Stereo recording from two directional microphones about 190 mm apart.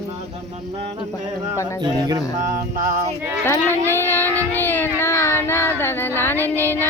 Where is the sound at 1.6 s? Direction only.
15° left (ahead or behind).